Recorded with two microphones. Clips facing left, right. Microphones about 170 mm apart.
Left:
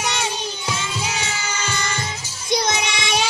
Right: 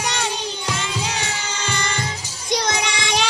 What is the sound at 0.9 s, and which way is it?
Music, 15° right (ahead or behind).